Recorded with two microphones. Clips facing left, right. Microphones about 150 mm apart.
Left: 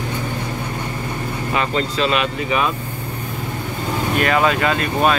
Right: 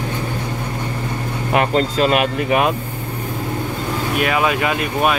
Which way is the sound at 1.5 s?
55° right (ahead or behind).